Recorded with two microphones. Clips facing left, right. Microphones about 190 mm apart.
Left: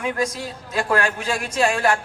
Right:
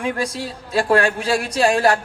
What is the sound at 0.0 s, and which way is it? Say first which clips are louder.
A man's voice: right 1 dB; 35° right (ahead or behind).